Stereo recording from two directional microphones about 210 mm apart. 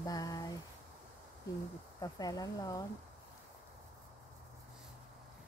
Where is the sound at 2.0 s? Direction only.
15° left (ahead or behind).